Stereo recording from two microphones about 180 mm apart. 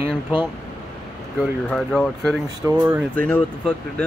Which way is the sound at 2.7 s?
15° right (ahead or behind).